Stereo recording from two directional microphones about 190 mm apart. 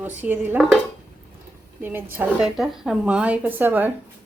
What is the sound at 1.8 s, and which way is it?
A woman's voice, 10° right (ahead or behind).